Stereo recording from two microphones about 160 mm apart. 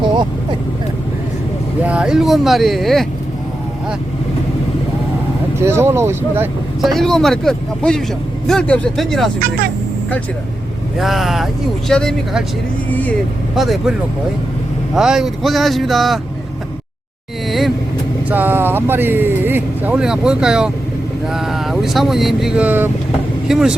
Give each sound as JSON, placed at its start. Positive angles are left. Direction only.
{"t": 0.0, "sound": "vehicle", "side_deg": -30}
{"t": 1.8, "sound": "speech", "side_deg": -5}
{"t": 5.5, "sound": "speech", "side_deg": -15}
{"t": 6.8, "sound": "speech", "side_deg": 0}
{"t": 10.9, "sound": "speech", "side_deg": 0}
{"t": 13.6, "sound": "speech", "side_deg": 0}
{"t": 14.9, "sound": "speech", "side_deg": -5}
{"t": 18.3, "sound": "speech", "side_deg": -10}